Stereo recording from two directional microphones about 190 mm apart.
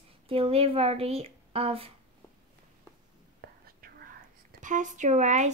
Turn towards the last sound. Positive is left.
turn(degrees=-40)  # may be behind; listen again after turning